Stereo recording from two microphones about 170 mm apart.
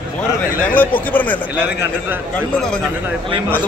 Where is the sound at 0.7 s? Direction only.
10° left (ahead or behind).